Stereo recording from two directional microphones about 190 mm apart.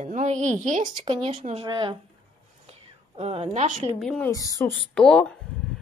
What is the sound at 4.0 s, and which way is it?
Speech, 5° left (ahead or behind).